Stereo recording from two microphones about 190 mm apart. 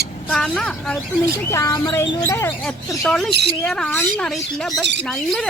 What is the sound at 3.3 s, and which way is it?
Speech, 60° right (ahead or behind).